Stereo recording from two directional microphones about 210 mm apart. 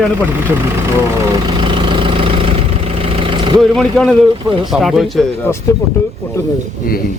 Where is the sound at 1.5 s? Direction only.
25° right (ahead or behind).